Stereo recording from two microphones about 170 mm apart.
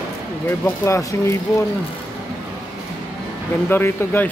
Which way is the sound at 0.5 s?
15° left (ahead or behind).